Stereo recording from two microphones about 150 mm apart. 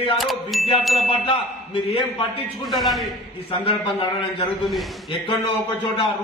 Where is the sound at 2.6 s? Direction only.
Centre (ahead or behind).